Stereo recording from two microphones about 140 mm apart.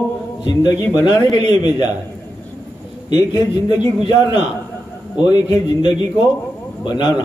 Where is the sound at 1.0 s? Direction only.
35° left (ahead or behind).